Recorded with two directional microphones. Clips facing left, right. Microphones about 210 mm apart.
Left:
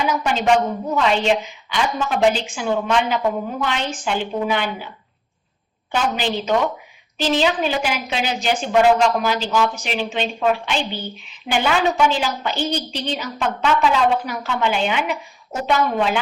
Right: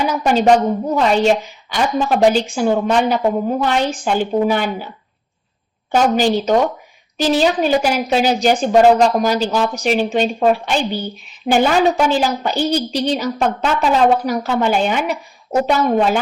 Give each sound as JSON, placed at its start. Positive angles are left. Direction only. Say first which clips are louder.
{"t": 0.0, "sound": "a woman's voice", "louder": "right 5 dB", "side_deg": -40}
{"t": 5.9, "sound": "a woman's voice", "louder": "right 7 dB", "side_deg": -45}